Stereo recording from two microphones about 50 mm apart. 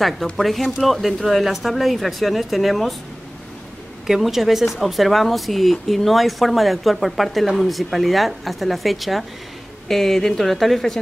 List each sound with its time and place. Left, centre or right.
0.0 s speech: centre
4.1 s speech: centre